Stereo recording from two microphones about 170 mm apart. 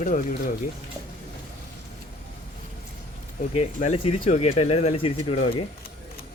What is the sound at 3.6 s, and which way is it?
Speech, 35° left (ahead or behind).